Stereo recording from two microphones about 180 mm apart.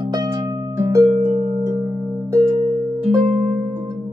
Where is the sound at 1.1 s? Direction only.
30° right (ahead or behind).